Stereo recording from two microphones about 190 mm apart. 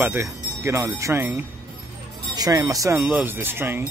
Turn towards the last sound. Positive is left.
turn(degrees=-10)  # may be behind; listen again after turning